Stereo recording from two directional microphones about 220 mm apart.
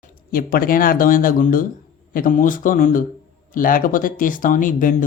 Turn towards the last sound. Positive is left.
turn(degrees=35)  # may be behind; listen again after turning